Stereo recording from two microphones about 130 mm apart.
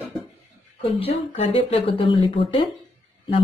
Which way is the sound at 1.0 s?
50° left (ahead or behind).